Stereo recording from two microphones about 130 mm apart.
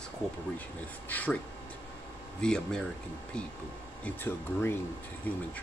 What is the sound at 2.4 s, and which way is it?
Speech, 5° left (ahead or behind).